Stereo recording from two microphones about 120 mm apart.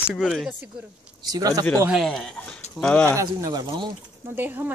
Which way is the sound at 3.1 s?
30° right (ahead or behind).